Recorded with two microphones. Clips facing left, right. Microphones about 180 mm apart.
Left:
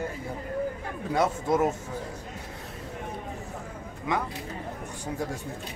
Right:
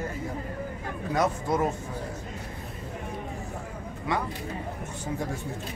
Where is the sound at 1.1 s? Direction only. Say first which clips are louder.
Left 1 dB; 25° left (ahead or behind).